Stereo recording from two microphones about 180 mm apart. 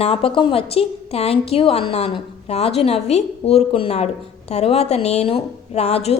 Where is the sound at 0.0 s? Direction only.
30° left (ahead or behind).